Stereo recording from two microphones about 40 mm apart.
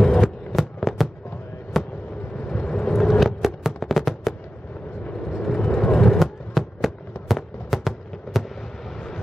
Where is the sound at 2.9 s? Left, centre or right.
Centre.